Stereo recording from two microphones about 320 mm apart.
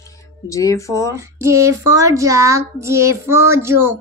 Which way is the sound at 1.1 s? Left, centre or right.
Centre.